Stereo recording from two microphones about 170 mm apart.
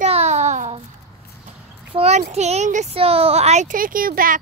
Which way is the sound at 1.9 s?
40° right (ahead or behind).